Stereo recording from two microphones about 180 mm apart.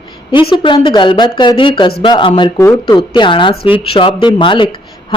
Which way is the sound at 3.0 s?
30° left (ahead or behind).